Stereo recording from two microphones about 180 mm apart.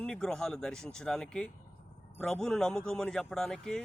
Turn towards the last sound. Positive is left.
turn(degrees=0)  # may be behind; listen again after turning